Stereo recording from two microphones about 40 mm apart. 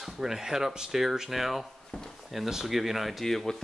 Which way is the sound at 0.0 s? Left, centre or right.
Centre.